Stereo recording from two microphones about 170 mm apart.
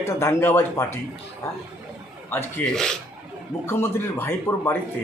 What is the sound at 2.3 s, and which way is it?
Speech, 10° left (ahead or behind).